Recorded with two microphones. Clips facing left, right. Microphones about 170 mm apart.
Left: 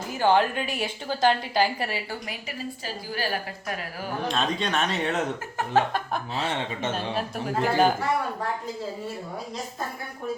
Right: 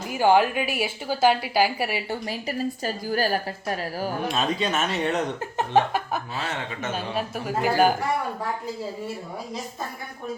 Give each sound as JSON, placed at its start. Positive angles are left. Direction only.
{"t": 0.1, "sound": "a woman's voice", "side_deg": -10}
{"t": 2.0, "sound": "a woman's voice", "side_deg": -30}
{"t": 4.3, "sound": "a woman's voice", "side_deg": -5}
{"t": 6.4, "sound": "speech", "side_deg": 30}
{"t": 6.9, "sound": "speech", "side_deg": 0}